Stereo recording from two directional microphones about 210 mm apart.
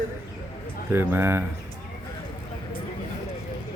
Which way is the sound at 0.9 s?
10° right (ahead or behind).